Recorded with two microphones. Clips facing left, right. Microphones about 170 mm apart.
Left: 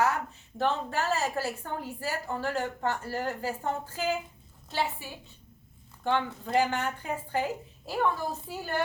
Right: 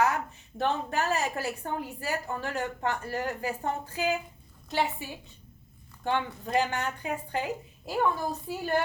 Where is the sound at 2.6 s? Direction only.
15° right (ahead or behind).